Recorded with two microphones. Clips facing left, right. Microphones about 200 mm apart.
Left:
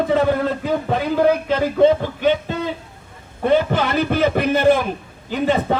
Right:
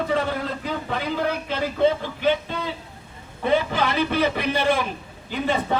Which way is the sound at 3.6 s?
45° left (ahead or behind).